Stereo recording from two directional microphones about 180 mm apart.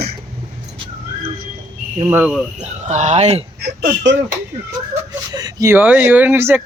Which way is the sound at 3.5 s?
65° right (ahead or behind).